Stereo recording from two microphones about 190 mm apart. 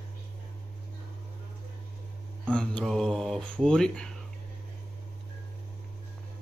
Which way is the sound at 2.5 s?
5° left (ahead or behind).